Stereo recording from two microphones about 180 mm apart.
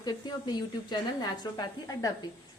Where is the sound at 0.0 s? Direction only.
25° left (ahead or behind).